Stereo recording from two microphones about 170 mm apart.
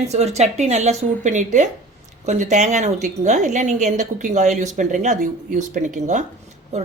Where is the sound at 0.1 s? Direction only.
40° right (ahead or behind).